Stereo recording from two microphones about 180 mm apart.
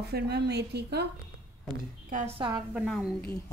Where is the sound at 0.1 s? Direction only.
65° right (ahead or behind).